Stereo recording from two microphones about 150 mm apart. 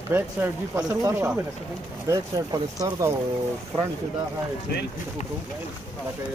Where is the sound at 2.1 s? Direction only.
25° right (ahead or behind).